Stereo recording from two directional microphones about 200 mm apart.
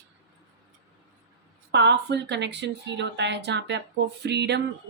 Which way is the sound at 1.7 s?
60° right (ahead or behind).